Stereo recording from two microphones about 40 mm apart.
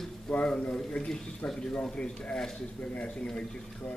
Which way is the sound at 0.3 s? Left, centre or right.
Centre.